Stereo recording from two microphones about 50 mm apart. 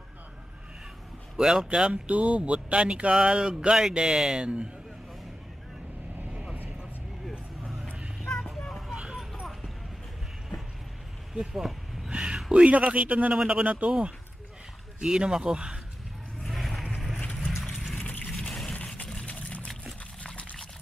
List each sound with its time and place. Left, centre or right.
1.3 s speech: centre
8.3 s vehicle: centre
8.8 s vehicle: centre
9.2 s a sound: centre
11.5 s a sound: centre
12.1 s a sound: centre
12.6 s speech: right
13.3 s speech: centre
13.7 s speech: right
15.0 s speech: centre
16.4 s vehicle: centre
17.2 s boat: left
17.9 s vehicle: left
19.2 s a sound: left